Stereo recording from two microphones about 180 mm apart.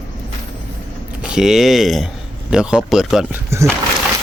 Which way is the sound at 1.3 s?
5° right (ahead or behind).